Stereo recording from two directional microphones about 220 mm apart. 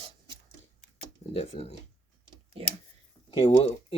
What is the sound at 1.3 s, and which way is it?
Speech, 25° left (ahead or behind).